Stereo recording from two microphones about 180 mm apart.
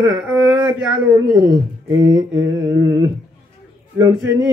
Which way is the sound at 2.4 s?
15° right (ahead or behind).